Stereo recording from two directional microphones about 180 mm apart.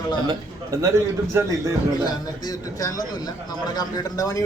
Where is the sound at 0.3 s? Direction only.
20° right (ahead or behind).